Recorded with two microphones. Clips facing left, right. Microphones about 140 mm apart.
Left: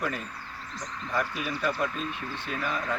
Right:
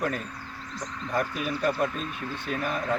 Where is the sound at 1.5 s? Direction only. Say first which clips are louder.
Right 3 dB; 45° right (ahead or behind).